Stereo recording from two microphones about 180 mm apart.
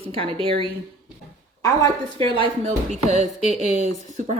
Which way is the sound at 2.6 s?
40° right (ahead or behind).